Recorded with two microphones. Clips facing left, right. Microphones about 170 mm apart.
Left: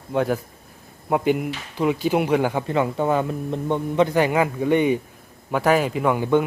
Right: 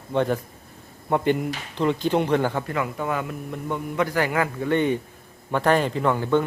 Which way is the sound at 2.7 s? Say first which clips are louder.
Left 6 dB; 30° left (ahead or behind).